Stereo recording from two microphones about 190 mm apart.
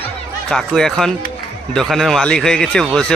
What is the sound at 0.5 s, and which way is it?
Speech, centre (ahead or behind).